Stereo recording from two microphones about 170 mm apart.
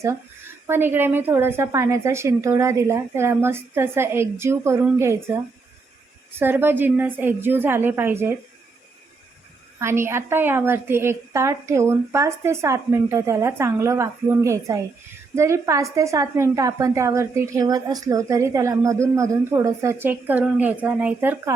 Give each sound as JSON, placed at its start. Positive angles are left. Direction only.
{"t": 0.7, "sound": "a woman's voice", "side_deg": -10}
{"t": 9.7, "sound": "a woman's voice", "side_deg": -15}